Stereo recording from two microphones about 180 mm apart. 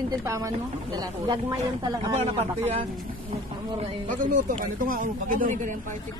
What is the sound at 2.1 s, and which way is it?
Speech, 35° right (ahead or behind).